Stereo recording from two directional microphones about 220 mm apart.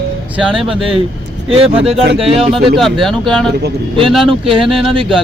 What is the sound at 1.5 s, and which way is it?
Speech, 25° right (ahead or behind).